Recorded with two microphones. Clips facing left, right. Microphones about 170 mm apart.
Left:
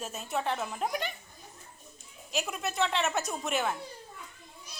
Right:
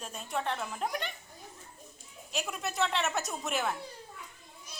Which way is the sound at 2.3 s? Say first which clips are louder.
Left 2 dB; centre (ahead or behind).